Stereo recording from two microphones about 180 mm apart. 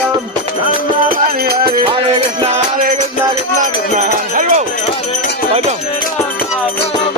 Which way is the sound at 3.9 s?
40° right (ahead or behind).